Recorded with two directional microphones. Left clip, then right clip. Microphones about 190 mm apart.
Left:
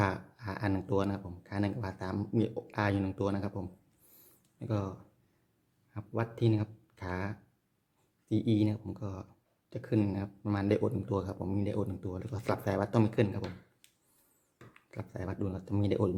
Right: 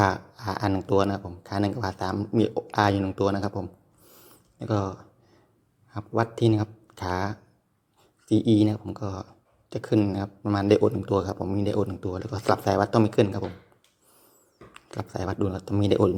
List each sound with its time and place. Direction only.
0.0 s speech: centre (ahead or behind)
14.7 s speech: centre (ahead or behind)